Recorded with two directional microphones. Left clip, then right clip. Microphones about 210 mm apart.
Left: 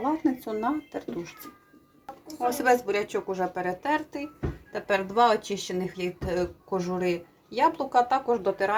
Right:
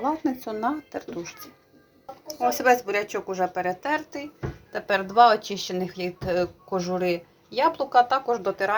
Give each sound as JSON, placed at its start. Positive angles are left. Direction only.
{"t": 0.0, "sound": "speech", "side_deg": 0}